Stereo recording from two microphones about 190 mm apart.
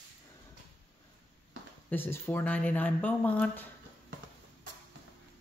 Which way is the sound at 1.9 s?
10° left (ahead or behind).